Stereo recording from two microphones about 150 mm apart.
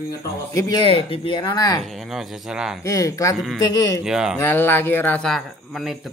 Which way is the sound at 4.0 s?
5° right (ahead or behind).